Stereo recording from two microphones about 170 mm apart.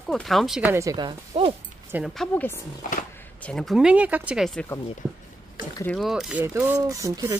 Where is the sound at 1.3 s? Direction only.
35° right (ahead or behind).